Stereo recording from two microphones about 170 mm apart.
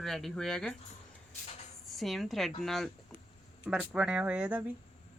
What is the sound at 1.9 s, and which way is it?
A woman's voice, centre (ahead or behind).